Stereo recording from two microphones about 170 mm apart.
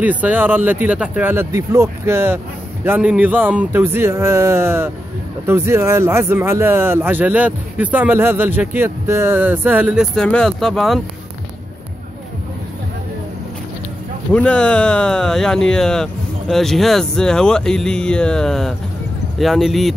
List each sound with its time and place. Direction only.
0.0 s speech: 10° right (ahead or behind)
14.3 s speech: 5° left (ahead or behind)